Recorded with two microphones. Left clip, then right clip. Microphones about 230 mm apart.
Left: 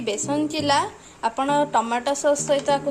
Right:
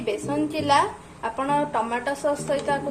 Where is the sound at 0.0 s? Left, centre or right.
Left.